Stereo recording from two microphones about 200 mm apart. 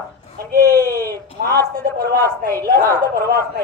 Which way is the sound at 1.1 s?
50° right (ahead or behind).